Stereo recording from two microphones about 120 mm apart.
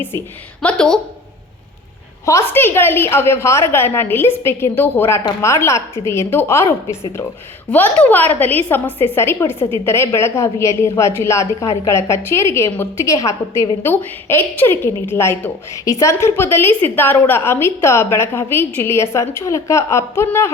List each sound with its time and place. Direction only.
0.6 s a woman's voice: 10° left (ahead or behind)
2.2 s a woman's voice: 20° left (ahead or behind)
7.7 s a woman's voice: 15° left (ahead or behind)